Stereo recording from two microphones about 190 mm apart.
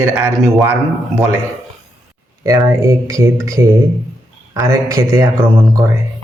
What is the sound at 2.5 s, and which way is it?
Speech, 15° right (ahead or behind).